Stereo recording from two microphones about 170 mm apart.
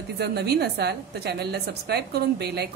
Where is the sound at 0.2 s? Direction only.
75° right (ahead or behind).